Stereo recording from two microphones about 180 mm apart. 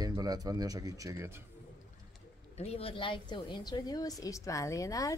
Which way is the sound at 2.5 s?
35° left (ahead or behind).